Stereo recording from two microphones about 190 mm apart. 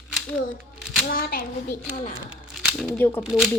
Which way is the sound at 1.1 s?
45° left (ahead or behind).